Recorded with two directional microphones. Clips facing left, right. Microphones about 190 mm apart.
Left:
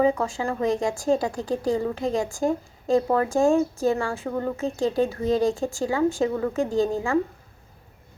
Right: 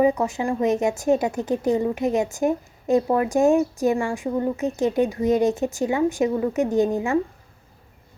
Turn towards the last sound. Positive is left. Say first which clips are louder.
# right 2 dB
turn(degrees=-20)  # may be behind; listen again after turning